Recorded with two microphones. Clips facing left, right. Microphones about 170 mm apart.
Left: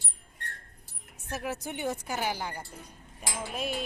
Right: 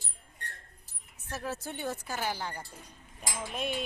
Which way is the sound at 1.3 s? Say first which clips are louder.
Left 2 dB; 15° left (ahead or behind).